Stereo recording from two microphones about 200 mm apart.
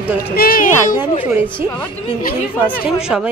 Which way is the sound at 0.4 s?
45° left (ahead or behind).